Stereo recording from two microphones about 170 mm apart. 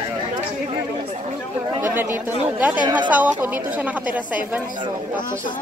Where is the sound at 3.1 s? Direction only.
10° right (ahead or behind).